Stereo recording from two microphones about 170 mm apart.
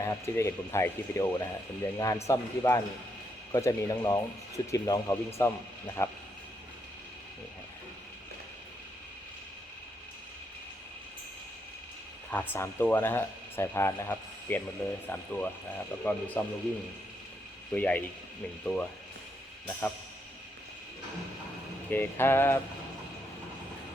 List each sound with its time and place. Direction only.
0.0 s speech: 15° left (ahead or behind)
12.3 s speech: 15° left (ahead or behind)
17.7 s speech: 10° left (ahead or behind)
21.8 s speech: 10° left (ahead or behind)